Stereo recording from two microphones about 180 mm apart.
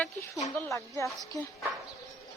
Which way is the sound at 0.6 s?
15° left (ahead or behind).